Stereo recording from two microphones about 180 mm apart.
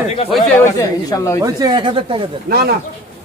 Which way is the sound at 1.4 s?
20° right (ahead or behind).